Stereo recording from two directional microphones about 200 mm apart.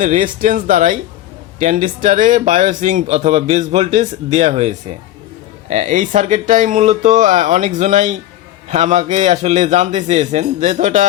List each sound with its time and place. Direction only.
0.0 s speech: 40° right (ahead or behind)